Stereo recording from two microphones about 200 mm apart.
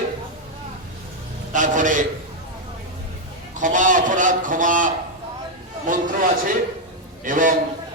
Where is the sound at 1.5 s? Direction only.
40° right (ahead or behind).